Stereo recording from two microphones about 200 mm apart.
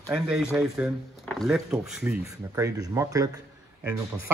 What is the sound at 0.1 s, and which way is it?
A man's voice, 5° right (ahead or behind).